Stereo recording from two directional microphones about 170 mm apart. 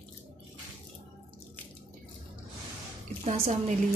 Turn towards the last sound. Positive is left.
turn(degrees=-45)  # may be behind; listen again after turning